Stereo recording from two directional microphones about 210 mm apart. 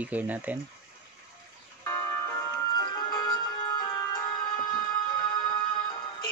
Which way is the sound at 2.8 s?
20° left (ahead or behind).